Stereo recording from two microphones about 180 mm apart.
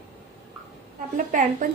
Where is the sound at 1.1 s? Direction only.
45° right (ahead or behind).